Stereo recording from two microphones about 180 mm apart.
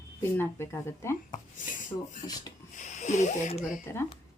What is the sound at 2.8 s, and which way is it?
Speech, 40° left (ahead or behind).